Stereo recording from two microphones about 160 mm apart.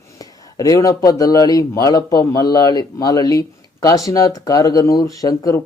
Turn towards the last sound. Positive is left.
turn(degrees=20)  # may be behind; listen again after turning